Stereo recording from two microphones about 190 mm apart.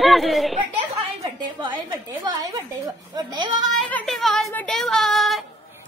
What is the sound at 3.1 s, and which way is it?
Speech, 20° right (ahead or behind).